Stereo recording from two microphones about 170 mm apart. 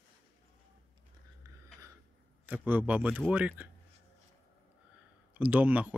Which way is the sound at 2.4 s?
10° right (ahead or behind).